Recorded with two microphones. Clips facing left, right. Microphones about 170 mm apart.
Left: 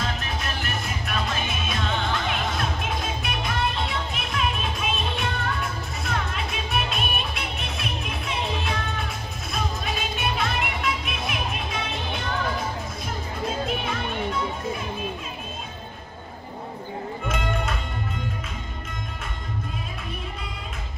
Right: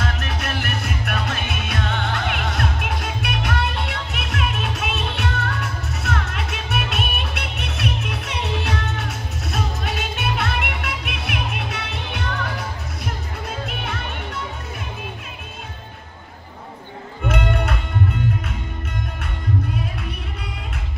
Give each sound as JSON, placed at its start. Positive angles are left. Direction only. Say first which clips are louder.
{"t": 0.0, "sound": "music", "louder": "right 3 dB", "side_deg": -70}
{"t": 17.3, "sound": "music", "louder": "right 6 dB", "side_deg": -60}